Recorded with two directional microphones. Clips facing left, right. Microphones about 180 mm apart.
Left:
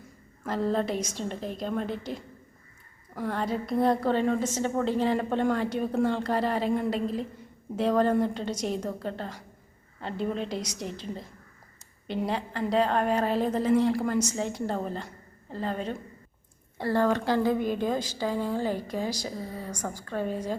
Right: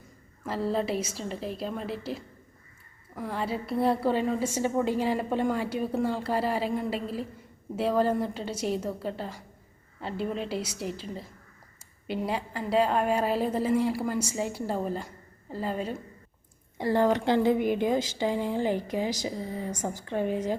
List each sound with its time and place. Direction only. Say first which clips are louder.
0.4 s a woman's voice: left 1 dB; 5° right (ahead or behind)
16.7 s a woman's voice: right 1 dB; 15° right (ahead or behind)